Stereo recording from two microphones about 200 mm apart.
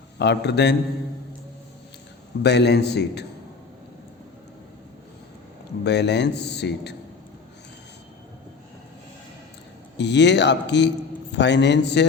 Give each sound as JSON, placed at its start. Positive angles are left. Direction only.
{"t": 0.2, "sound": "a man's voice", "side_deg": 60}
{"t": 2.4, "sound": "a man's voice", "side_deg": 55}
{"t": 5.8, "sound": "a man's voice", "side_deg": 60}
{"t": 10.0, "sound": "a man's voice", "side_deg": 60}